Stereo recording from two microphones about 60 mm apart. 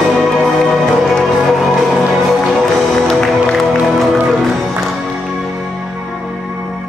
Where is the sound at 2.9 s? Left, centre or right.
Centre.